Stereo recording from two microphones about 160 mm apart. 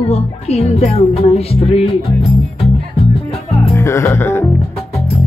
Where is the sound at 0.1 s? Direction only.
40° left (ahead or behind).